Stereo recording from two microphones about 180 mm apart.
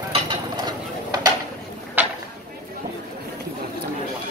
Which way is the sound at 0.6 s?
20° right (ahead or behind).